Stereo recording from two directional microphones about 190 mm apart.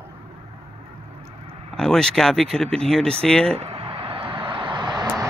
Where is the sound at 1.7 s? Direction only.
5° left (ahead or behind).